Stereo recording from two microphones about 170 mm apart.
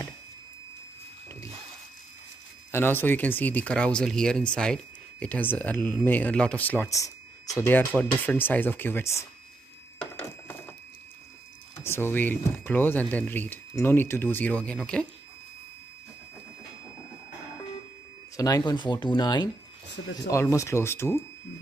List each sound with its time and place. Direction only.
2.7 s speech: 10° left (ahead or behind)
11.8 s speech: 15° left (ahead or behind)
18.3 s speech: 20° left (ahead or behind)